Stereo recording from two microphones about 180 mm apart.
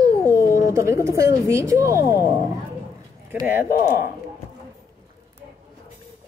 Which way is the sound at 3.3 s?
10° right (ahead or behind).